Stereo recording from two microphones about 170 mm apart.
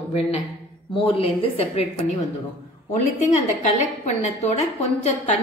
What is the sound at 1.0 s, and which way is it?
A woman's voice, 30° left (ahead or behind).